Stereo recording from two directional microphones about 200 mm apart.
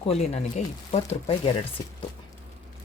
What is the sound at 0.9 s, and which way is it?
Speech, 25° left (ahead or behind).